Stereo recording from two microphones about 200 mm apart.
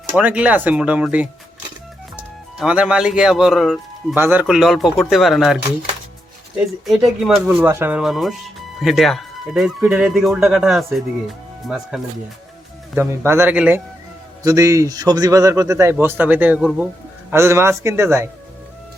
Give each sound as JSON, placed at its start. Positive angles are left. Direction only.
{"t": 0.2, "sound": "a man's voice", "side_deg": -5}
{"t": 2.6, "sound": "speech", "side_deg": -5}
{"t": 6.8, "sound": "a man's voice", "side_deg": 0}